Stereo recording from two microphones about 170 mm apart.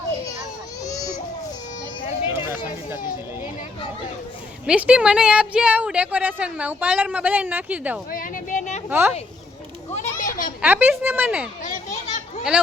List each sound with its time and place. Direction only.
0.9 s baby cry: 20° left (ahead or behind)
2.2 s a sound: 15° right (ahead or behind)
4.6 s a woman's voice: 5° right (ahead or behind)
8.1 s a sound: 55° left (ahead or behind)
8.9 s a woman's voice: 10° right (ahead or behind)
9.9 s children playing: 45° left (ahead or behind)
10.6 s a woman's voice: 10° right (ahead or behind)
11.6 s children playing: 50° left (ahead or behind)